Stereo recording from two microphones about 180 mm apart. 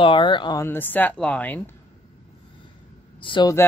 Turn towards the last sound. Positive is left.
turn(degrees=25)  # may be behind; listen again after turning